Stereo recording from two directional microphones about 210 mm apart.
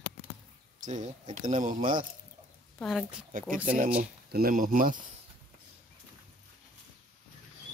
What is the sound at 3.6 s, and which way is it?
Speech, 40° right (ahead or behind).